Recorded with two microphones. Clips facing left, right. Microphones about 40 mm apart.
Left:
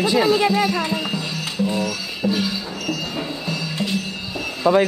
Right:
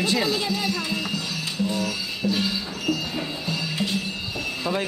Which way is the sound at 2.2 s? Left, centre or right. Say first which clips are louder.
Left 4 dB; left.